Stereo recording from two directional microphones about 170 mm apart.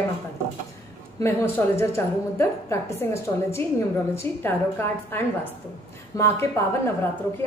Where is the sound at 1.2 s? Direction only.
15° left (ahead or behind).